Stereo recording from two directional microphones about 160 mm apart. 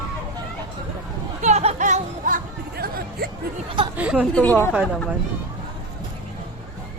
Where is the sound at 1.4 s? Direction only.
45° right (ahead or behind); by 3.3 s 75° right (ahead or behind).